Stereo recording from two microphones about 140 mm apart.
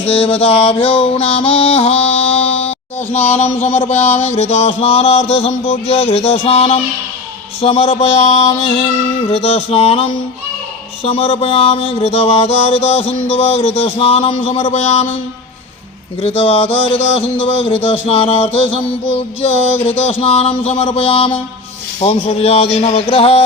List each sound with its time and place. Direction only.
0.0 s mantra: 45° left (ahead or behind)
16.2 s mantra: 45° left (ahead or behind)